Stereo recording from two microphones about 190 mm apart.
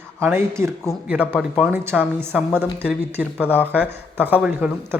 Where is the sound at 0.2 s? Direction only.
10° right (ahead or behind).